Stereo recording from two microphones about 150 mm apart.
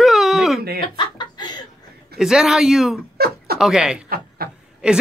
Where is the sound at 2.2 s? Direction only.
5° right (ahead or behind).